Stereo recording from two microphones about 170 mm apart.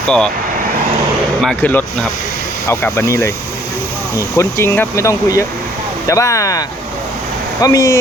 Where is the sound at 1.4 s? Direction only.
5° left (ahead or behind).